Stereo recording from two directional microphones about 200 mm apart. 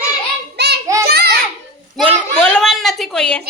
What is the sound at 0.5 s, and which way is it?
Child singing, 55° right (ahead or behind).